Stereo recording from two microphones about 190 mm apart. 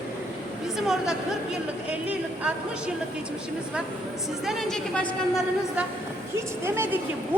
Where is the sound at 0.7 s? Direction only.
Centre (ahead or behind).